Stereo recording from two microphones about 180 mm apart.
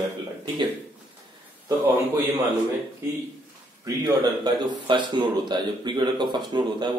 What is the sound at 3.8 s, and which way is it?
Speech, 25° right (ahead or behind).